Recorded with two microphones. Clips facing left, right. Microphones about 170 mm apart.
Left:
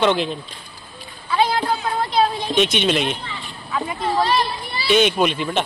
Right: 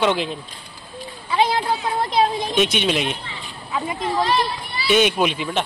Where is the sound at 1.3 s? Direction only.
20° right (ahead or behind).